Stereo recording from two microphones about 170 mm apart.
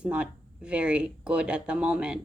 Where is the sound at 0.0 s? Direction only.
5° right (ahead or behind).